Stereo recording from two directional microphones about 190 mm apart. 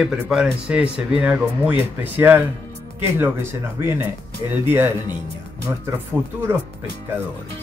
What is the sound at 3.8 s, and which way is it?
Speech, 10° right (ahead or behind).